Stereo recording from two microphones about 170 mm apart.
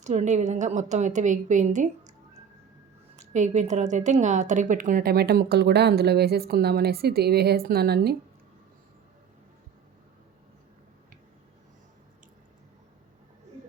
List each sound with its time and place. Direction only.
0.0 s a woman's voice: 45° right (ahead or behind)
3.2 s a woman's voice: 45° right (ahead or behind); by 8.1 s 65° right (ahead or behind)